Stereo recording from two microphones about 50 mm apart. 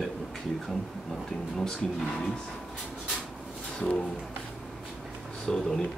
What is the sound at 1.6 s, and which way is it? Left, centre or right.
Speech, centre.